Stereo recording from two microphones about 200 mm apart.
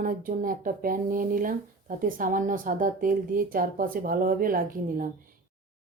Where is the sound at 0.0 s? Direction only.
45° right (ahead or behind).